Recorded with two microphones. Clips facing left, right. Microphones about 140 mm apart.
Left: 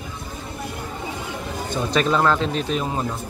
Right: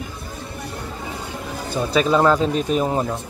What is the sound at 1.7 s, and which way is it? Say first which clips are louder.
Speech: right 3 dB; 5° right (ahead or behind).